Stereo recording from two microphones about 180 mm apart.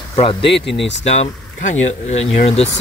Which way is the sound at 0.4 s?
75° left (ahead or behind).